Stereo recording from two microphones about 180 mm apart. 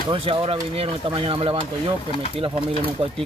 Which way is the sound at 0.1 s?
30° right (ahead or behind).